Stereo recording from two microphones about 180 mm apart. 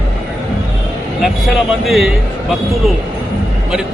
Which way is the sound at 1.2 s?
Centre (ahead or behind).